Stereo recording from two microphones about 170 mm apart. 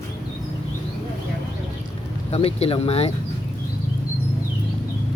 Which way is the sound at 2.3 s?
35° left (ahead or behind).